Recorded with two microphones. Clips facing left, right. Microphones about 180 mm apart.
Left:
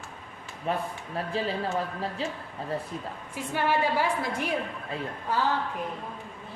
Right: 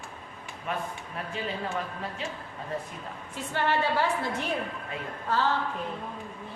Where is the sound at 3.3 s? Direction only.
10° left (ahead or behind).